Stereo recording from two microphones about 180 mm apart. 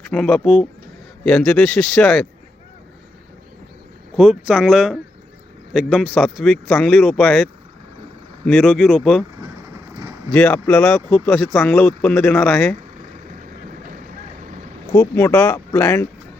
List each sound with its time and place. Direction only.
0.1 s speech: 5° left (ahead or behind)
4.2 s speech: 5° right (ahead or behind)
9.9 s vehicle: 20° right (ahead or behind)
10.3 s speech: 5° left (ahead or behind)
14.9 s speech: 10° left (ahead or behind)